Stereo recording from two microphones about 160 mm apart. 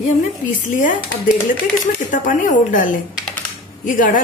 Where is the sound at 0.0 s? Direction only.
55° left (ahead or behind).